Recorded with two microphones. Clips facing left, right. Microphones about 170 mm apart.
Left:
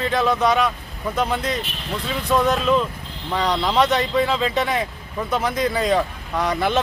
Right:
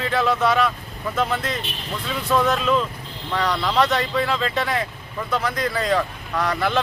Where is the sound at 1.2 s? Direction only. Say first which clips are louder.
Left 1 dB; centre (ahead or behind).